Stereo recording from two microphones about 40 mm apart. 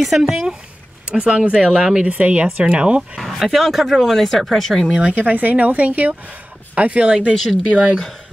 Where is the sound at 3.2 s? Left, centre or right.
Centre.